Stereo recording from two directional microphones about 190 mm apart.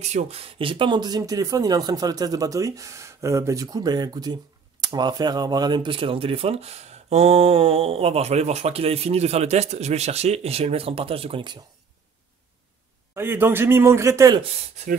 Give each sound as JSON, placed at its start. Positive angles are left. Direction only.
{"t": 0.0, "sound": "speech", "side_deg": -35}
{"t": 13.1, "sound": "speech", "side_deg": -10}